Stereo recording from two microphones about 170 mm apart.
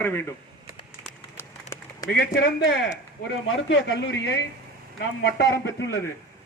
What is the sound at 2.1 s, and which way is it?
A man's voice, 75° left (ahead or behind).